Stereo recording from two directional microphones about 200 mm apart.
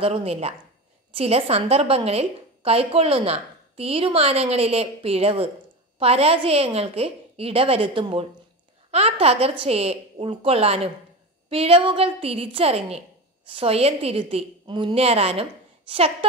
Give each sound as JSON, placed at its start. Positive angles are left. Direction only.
{"t": 0.0, "sound": "a woman's voice", "side_deg": -30}